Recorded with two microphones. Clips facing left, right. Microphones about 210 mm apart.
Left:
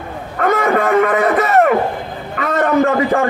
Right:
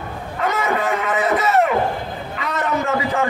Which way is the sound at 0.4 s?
55° left (ahead or behind).